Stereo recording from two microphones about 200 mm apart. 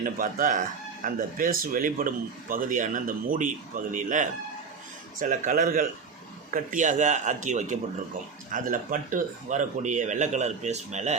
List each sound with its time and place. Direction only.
0.0 s speech: 40° right (ahead or behind)